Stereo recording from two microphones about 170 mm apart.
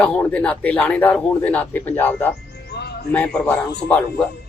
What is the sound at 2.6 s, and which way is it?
Music, 75° left (ahead or behind).